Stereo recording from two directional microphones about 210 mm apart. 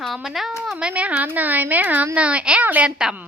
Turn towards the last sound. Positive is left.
turn(degrees=-5)  # may be behind; listen again after turning